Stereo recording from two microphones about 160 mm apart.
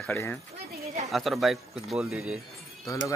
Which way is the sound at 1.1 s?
Centre (ahead or behind).